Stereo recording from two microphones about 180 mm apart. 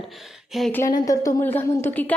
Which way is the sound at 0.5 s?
Centre (ahead or behind).